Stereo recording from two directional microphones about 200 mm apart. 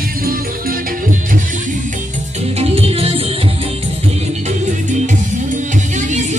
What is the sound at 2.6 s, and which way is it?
Music, 30° right (ahead or behind).